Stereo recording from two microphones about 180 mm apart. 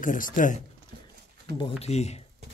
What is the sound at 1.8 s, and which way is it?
Speech, 35° left (ahead or behind).